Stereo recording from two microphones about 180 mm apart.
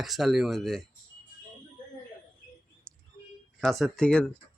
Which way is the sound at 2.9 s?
5° left (ahead or behind).